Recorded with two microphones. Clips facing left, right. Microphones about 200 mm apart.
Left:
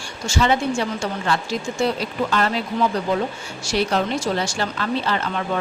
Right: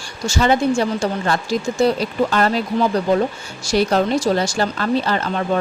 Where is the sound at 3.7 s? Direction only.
40° right (ahead or behind).